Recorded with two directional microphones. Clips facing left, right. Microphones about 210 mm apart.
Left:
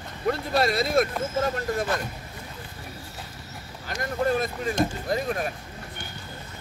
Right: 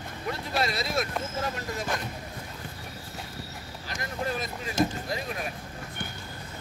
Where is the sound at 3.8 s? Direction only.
50° left (ahead or behind).